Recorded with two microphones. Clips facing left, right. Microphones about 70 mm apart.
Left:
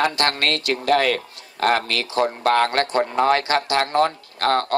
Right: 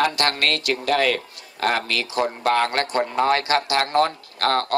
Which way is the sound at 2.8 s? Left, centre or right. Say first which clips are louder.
Left 2 dB; left.